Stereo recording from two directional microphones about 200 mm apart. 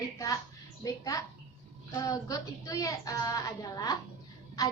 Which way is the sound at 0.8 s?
15° left (ahead or behind).